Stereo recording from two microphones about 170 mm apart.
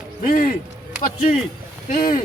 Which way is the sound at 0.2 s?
55° left (ahead or behind).